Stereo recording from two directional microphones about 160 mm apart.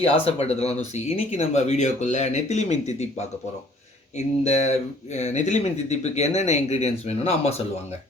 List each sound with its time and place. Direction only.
0.0 s speech: 40° left (ahead or behind)
4.4 s speech: 45° left (ahead or behind)